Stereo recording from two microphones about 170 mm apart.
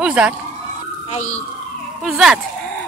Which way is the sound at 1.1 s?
40° left (ahead or behind).